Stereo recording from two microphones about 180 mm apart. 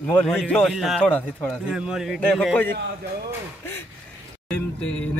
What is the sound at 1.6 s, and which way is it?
Speech, 5° right (ahead or behind).